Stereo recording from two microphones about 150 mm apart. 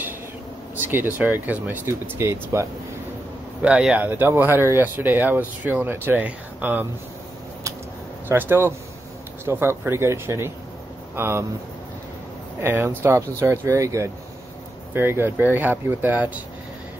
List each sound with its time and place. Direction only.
0.7 s speech: 15° right (ahead or behind)
3.6 s speech: 5° right (ahead or behind)
8.3 s speech: 15° right (ahead or behind)
12.5 s speech: 15° right (ahead or behind)